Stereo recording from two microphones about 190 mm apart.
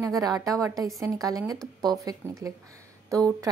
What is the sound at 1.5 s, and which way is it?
Speech, centre (ahead or behind).